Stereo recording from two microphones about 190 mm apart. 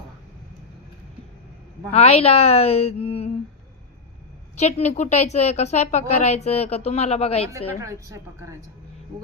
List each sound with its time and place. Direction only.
1.9 s a woman's voice: 35° left (ahead or behind)
4.5 s a woman's voice: 35° left (ahead or behind)
7.8 s a woman's voice: 15° right (ahead or behind)